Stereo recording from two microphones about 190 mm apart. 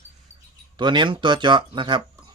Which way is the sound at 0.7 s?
25° right (ahead or behind).